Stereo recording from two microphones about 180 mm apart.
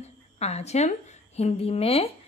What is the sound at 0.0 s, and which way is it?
A woman's voice, 35° left (ahead or behind).